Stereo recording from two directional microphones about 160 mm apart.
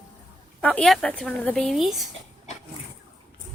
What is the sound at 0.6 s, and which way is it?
Speech, 10° left (ahead or behind).